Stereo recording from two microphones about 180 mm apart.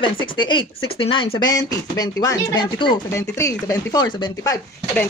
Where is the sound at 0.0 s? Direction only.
25° left (ahead or behind).